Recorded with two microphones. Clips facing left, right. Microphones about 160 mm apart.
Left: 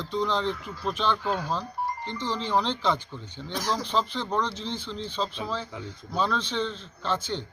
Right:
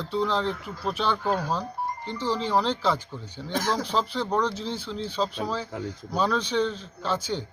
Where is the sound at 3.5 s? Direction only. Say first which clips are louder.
Right 3 dB; 50° right (ahead or behind).